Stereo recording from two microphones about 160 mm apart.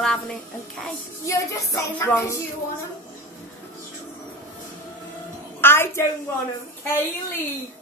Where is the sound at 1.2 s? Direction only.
20° left (ahead or behind).